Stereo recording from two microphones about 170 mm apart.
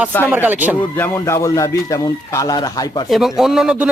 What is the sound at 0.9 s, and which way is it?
Speech, 15° left (ahead or behind).